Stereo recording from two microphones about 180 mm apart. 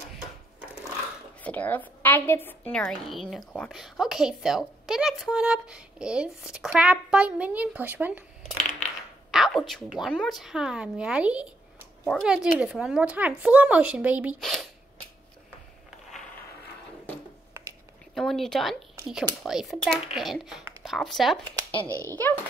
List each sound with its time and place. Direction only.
1.4 s a woman's voice: 10° left (ahead or behind); by 8.2 s 10° right (ahead or behind)
9.3 s a woman's voice: centre (ahead or behind)
17.6 s a sound: 10° right (ahead or behind)
18.1 s a woman's voice: centre (ahead or behind)
21.8 s speech: 15° right (ahead or behind)